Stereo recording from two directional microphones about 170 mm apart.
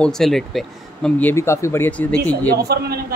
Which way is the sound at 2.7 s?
70° right (ahead or behind).